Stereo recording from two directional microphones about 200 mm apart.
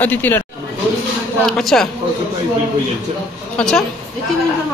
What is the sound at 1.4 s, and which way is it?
Speech, centre (ahead or behind).